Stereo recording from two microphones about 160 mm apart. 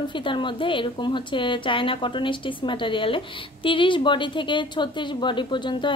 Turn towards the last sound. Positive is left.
turn(degrees=30)  # may be behind; listen again after turning